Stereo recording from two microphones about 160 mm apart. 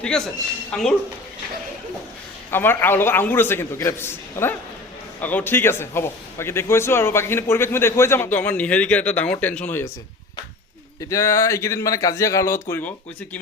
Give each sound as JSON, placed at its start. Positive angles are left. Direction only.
{"t": 0.7, "sound": "speech", "side_deg": 5}
{"t": 2.5, "sound": "a man's voice", "side_deg": 15}
{"t": 11.1, "sound": "a man's voice", "side_deg": 15}